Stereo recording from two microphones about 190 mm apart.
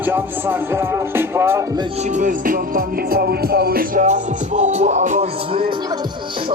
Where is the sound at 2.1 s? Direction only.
45° right (ahead or behind); by 5.7 s 30° right (ahead or behind).